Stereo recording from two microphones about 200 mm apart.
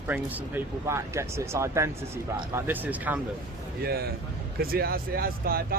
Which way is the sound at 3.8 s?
50° right (ahead or behind).